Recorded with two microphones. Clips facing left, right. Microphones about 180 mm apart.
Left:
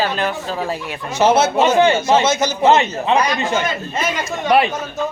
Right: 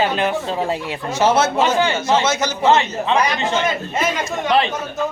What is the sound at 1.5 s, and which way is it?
A man's voice, 20° left (ahead or behind).